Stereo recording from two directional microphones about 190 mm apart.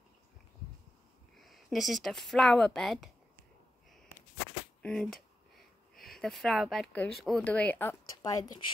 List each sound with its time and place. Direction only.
1.4 s speech: centre (ahead or behind)
4.8 s a sound: centre (ahead or behind)
7.2 s speech: centre (ahead or behind)
8.2 s speech: 20° left (ahead or behind)